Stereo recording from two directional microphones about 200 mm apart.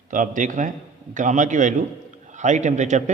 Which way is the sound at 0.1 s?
40° right (ahead or behind).